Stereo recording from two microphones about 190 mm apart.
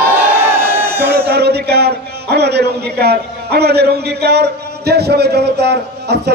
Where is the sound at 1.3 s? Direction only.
60° right (ahead or behind).